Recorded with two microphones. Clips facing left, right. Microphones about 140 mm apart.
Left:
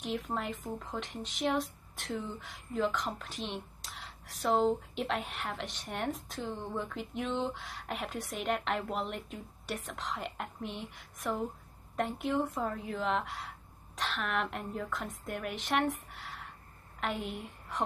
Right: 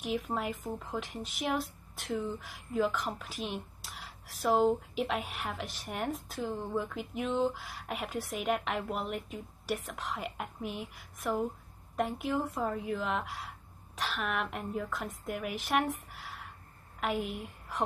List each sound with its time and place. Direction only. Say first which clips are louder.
0.0 s speech: right 2 dB; 5° right (ahead or behind)